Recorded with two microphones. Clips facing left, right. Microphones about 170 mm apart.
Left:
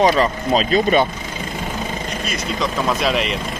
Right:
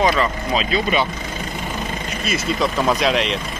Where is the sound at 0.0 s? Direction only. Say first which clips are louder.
Left 3 dB; 35° left (ahead or behind).